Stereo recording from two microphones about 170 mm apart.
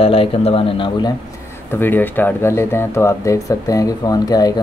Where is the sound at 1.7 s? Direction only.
10° left (ahead or behind).